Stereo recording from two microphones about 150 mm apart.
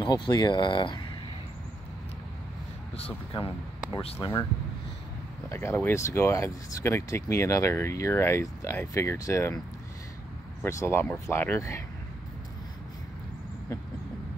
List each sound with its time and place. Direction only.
0.0 s speech: 30° left (ahead or behind)
4.2 s speech: 20° left (ahead or behind)
5.5 s speech: 15° left (ahead or behind)
10.6 s speech: 20° left (ahead or behind)